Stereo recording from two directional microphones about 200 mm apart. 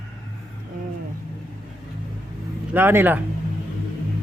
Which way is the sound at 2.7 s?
10° right (ahead or behind).